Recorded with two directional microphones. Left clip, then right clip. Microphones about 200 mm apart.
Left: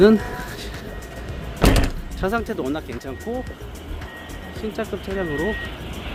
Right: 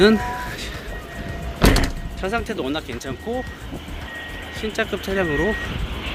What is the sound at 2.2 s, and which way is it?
Speech, 25° left (ahead or behind).